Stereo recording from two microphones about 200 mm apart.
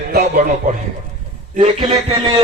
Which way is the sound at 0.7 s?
45° right (ahead or behind).